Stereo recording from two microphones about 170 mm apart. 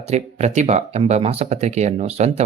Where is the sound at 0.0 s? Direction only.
40° right (ahead or behind).